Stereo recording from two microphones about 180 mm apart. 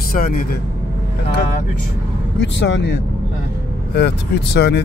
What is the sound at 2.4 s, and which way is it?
Speech, 85° left.